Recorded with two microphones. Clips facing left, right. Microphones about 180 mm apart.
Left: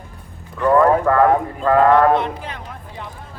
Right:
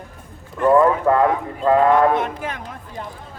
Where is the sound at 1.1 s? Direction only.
20° right (ahead or behind).